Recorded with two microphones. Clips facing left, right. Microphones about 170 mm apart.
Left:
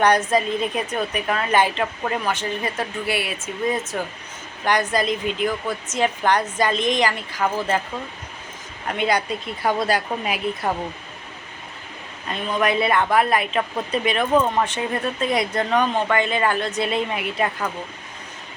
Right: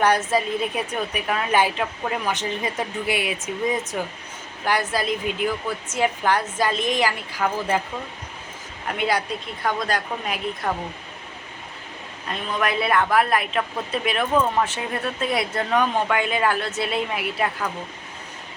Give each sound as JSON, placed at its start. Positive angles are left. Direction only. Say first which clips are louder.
{"t": 0.0, "sound": "a woman's voice", "louder": "left 2 dB", "side_deg": -5}
{"t": 2.3, "sound": "a woman's voice", "louder": "left 1 dB", "side_deg": -20}
{"t": 4.6, "sound": "a woman's voice", "louder": "left 3 dB", "side_deg": -5}
{"t": 9.0, "sound": "speech", "louder": "left 2 dB", "side_deg": -5}
{"t": 12.3, "sound": "speech", "louder": "left 3 dB", "side_deg": 0}